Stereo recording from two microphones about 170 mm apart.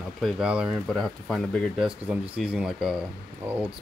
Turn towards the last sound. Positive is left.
turn(degrees=-15)  # may be behind; listen again after turning